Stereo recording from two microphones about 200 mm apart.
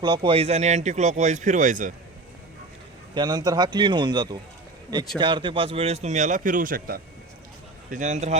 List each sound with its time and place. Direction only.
0.0 s speech: 20° right (ahead or behind); by 1.9 s 40° right (ahead or behind)
3.2 s a man's voice: 20° right (ahead or behind); by 8.4 s 35° right (ahead or behind)